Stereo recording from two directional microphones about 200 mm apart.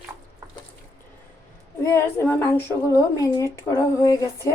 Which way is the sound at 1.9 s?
10° left (ahead or behind).